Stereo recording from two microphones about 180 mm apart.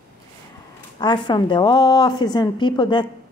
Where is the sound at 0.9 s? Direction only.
25° left (ahead or behind).